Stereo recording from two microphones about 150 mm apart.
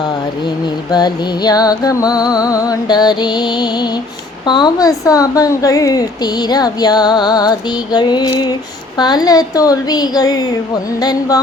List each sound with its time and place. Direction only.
0.9 s music: 25° left (ahead or behind)